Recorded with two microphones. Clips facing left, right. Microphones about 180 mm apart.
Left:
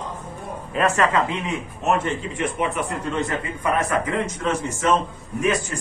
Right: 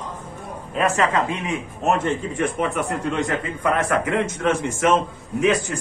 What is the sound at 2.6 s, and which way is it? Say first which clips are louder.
Speech: right 2 dB; 55° right (ahead or behind).